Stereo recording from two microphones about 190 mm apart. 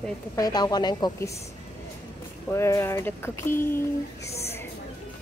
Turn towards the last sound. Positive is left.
turn(degrees=15)  # may be behind; listen again after turning